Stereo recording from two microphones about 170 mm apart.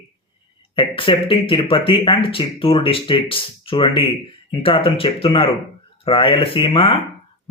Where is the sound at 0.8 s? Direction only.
30° left (ahead or behind).